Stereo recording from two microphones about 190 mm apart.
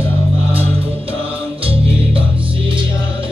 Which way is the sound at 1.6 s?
30° right (ahead or behind).